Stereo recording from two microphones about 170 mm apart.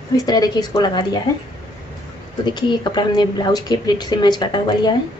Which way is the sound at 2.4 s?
25° left (ahead or behind).